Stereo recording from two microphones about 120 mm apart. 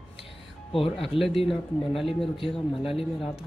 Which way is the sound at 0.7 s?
50° left (ahead or behind).